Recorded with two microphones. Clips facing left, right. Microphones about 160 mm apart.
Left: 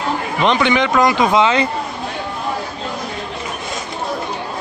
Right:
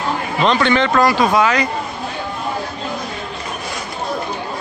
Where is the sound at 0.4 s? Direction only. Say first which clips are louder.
Even; 15° left (ahead or behind).